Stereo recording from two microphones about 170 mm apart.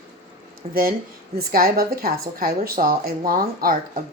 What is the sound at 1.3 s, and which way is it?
A woman's voice, 60° right (ahead or behind).